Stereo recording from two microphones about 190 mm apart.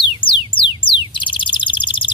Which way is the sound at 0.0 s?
25° left (ahead or behind).